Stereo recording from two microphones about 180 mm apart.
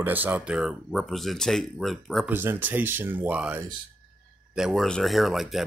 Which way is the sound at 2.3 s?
10° right (ahead or behind).